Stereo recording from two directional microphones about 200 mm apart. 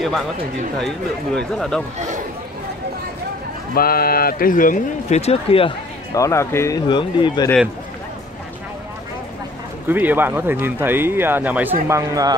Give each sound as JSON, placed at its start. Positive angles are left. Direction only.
{"t": 0.7, "sound": "speech", "side_deg": 0}
{"t": 2.0, "sound": "a man's voice", "side_deg": -40}
{"t": 3.7, "sound": "speech", "side_deg": 50}
{"t": 6.1, "sound": "speech", "side_deg": 15}
{"t": 9.8, "sound": "speech", "side_deg": -10}